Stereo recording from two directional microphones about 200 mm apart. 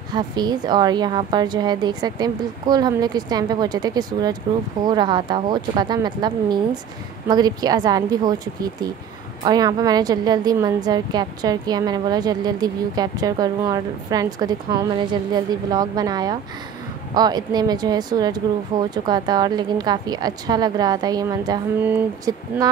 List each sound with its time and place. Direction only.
0.1 s a woman's voice: 20° right (ahead or behind)